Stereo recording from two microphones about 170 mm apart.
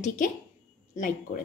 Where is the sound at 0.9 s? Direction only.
50° left (ahead or behind).